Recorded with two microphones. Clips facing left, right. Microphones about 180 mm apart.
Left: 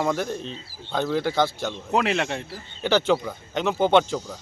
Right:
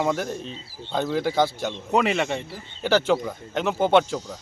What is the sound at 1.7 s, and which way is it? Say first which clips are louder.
A man's voice: right 1 dB; centre (ahead or behind).